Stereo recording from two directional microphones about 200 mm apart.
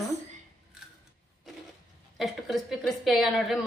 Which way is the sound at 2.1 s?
Centre (ahead or behind).